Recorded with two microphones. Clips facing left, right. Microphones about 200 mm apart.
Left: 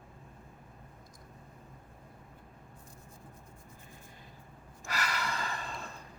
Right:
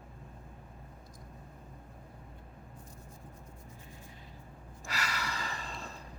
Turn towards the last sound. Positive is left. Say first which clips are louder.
# left 2 dB
turn(degrees=55)  # may be behind; listen again after turning